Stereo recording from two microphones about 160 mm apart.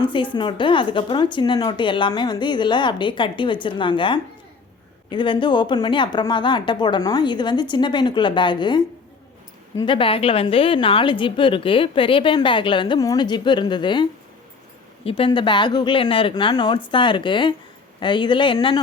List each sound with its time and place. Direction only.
0.0 s a woman's voice: 30° left (ahead or behind)